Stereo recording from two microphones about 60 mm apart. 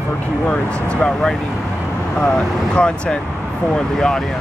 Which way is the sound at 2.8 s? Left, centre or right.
Centre.